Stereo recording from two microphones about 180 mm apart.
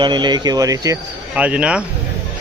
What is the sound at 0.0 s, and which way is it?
Speech, 25° right (ahead or behind).